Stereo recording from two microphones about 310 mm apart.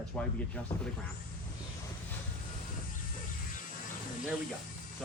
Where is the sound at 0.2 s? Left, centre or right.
Centre.